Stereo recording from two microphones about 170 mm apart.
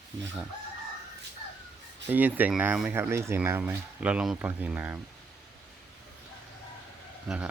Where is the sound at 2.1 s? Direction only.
10° right (ahead or behind).